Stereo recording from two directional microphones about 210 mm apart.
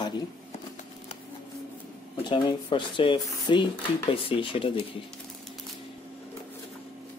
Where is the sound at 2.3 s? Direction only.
25° left (ahead or behind).